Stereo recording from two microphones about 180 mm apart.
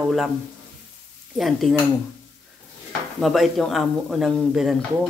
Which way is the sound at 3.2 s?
Centre (ahead or behind).